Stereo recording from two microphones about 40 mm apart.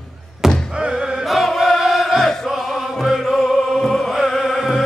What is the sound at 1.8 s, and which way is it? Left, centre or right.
Music, centre.